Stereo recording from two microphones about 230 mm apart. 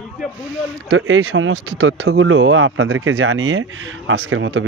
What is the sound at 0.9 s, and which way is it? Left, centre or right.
Speech, right.